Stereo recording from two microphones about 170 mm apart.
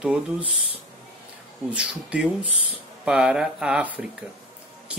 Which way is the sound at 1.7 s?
5° right (ahead or behind).